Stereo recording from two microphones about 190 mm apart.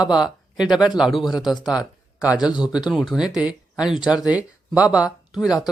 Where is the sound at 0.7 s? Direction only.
Centre (ahead or behind).